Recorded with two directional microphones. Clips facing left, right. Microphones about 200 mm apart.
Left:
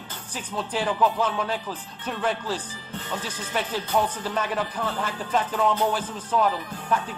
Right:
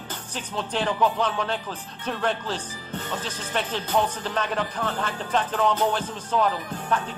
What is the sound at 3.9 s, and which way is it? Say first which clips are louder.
Music: even; 5° left (ahead or behind).